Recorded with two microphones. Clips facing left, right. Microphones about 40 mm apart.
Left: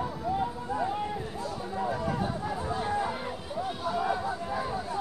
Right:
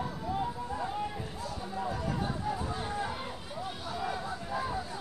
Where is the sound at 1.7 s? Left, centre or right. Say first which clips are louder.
Left 4 dB; centre.